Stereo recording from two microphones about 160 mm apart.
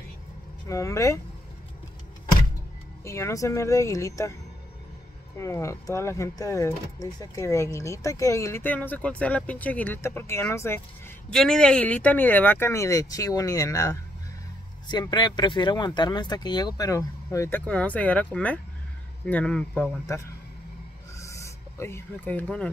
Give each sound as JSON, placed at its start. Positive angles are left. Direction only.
{"t": 0.7, "sound": "speech", "side_deg": 20}
{"t": 3.0, "sound": "speech", "side_deg": 20}
{"t": 5.4, "sound": "speech", "side_deg": 20}
{"t": 11.2, "sound": "speech", "side_deg": 5}
{"t": 20.1, "sound": "speech", "side_deg": 20}
{"t": 21.2, "sound": "a sound", "side_deg": 20}